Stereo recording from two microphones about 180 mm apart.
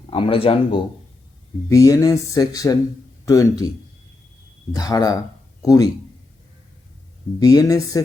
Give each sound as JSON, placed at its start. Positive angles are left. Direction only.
{"t": 0.1, "sound": "speech", "side_deg": 30}
{"t": 1.7, "sound": "speech", "side_deg": 15}
{"t": 4.7, "sound": "speech", "side_deg": 20}
{"t": 7.3, "sound": "speech", "side_deg": 20}